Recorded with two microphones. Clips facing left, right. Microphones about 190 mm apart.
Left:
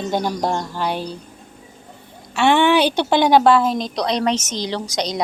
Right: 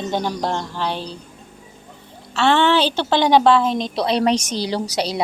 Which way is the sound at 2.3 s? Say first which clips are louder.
Left 1 dB; 15° left (ahead or behind).